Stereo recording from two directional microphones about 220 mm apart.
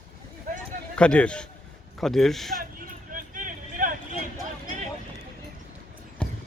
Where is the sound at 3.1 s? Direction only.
35° right (ahead or behind).